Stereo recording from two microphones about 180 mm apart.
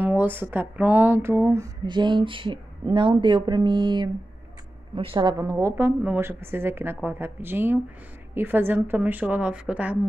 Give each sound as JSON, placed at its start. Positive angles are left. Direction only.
{"t": 0.0, "sound": "a woman's voice", "side_deg": -10}